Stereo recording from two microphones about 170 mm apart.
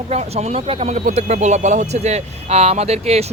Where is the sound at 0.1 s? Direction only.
40° right (ahead or behind).